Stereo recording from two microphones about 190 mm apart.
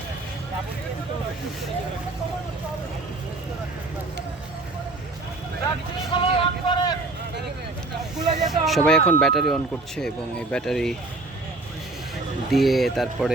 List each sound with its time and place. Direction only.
6.1 s vehicle: 25° left (ahead or behind)
8.2 s snake: 20° right (ahead or behind)
8.6 s speech: centre (ahead or behind)
12.5 s speech: centre (ahead or behind)